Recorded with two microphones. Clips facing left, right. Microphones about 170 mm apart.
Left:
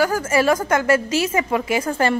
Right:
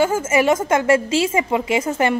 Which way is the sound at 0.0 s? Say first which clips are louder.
Right 1 dB; 20° right (ahead or behind).